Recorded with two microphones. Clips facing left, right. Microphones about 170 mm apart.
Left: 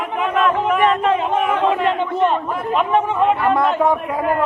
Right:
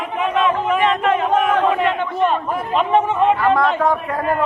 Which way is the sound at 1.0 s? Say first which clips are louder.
Right 1 dB; 30° left (ahead or behind).